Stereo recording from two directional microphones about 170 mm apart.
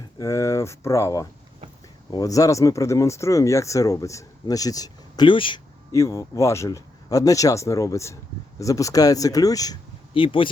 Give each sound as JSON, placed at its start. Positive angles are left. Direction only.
{"t": 0.2, "sound": "speech", "side_deg": 15}
{"t": 5.9, "sound": "speech", "side_deg": 15}
{"t": 10.2, "sound": "speech", "side_deg": 30}